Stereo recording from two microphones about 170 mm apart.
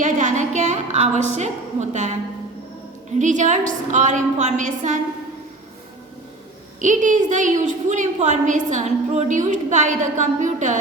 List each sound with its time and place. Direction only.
0.0 s a sound: 50° right (ahead or behind)
3.2 s a woman's voice: 45° right (ahead or behind)
6.8 s a woman's voice: 45° right (ahead or behind)